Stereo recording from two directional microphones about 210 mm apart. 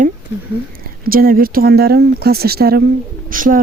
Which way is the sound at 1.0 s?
45° right (ahead or behind).